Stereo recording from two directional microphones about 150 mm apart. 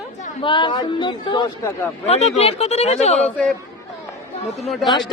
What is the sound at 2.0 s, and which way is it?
Speech, 45° left (ahead or behind).